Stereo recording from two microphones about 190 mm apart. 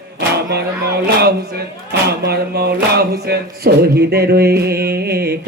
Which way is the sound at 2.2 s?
55° right (ahead or behind).